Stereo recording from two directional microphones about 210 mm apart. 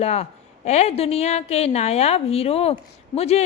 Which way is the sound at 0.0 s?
30° left (ahead or behind).